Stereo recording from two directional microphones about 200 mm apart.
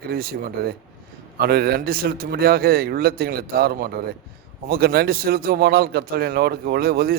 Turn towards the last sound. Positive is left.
turn(degrees=-50)  # may be behind; listen again after turning